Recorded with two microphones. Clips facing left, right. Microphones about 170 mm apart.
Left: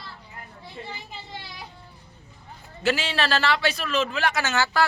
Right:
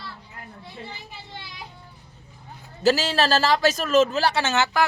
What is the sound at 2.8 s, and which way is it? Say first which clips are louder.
Speech: right 5 dB; 40° right (ahead or behind).